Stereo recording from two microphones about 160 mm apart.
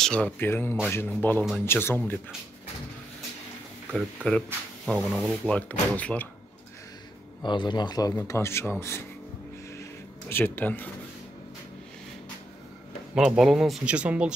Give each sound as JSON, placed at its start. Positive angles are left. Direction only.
{"t": 0.0, "sound": "speech", "side_deg": 5}
{"t": 3.9, "sound": "speech", "side_deg": 5}
{"t": 7.4, "sound": "a man's voice", "side_deg": 30}
{"t": 10.3, "sound": "speech", "side_deg": 10}
{"t": 13.1, "sound": "speech", "side_deg": 0}